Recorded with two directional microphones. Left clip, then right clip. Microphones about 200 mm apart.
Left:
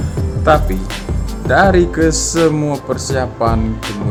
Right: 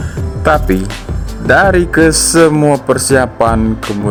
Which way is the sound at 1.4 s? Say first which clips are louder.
Right 2 dB; 45° right (ahead or behind).